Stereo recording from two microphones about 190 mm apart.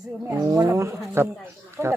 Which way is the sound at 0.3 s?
15° right (ahead or behind).